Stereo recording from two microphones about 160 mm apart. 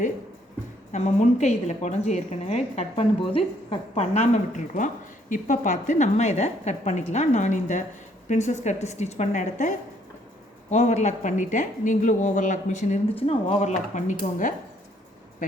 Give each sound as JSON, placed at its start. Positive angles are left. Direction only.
{"t": 0.9, "sound": "a woman's voice", "side_deg": 45}
{"t": 13.2, "sound": "a woman's voice", "side_deg": 40}
{"t": 15.4, "sound": "speech", "side_deg": 55}